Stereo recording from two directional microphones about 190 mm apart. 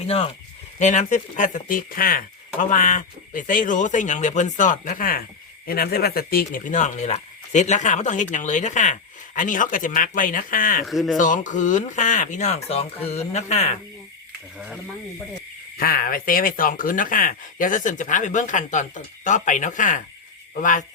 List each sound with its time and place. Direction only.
0.0 s a man's voice: 30° left (ahead or behind)
10.8 s speech: centre (ahead or behind)
11.2 s a man's voice: 40° left (ahead or behind)
15.8 s speech: 50° left (ahead or behind)